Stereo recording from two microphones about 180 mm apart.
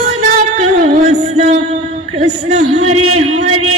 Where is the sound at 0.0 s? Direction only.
45° right (ahead or behind).